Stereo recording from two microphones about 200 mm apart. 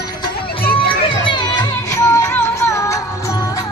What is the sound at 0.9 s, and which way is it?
Crowd, 25° left (ahead or behind).